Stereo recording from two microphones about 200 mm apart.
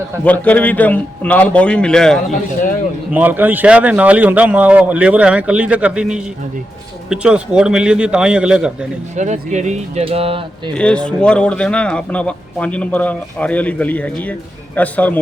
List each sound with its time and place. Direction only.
0.3 s a man's voice: 5° left (ahead or behind)
3.1 s speech: 10° right (ahead or behind)
9.1 s speech: 35° right (ahead or behind)
10.8 s a man's voice: 5° left (ahead or behind)